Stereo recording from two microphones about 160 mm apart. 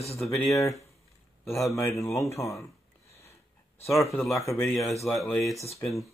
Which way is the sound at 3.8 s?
20° left (ahead or behind).